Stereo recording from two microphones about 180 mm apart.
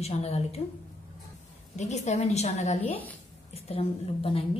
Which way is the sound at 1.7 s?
40° left (ahead or behind).